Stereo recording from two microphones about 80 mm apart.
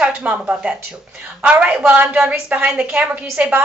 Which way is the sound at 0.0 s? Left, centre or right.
Centre.